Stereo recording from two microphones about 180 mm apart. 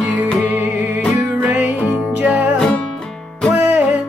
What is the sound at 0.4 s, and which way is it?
Music, 15° right (ahead or behind).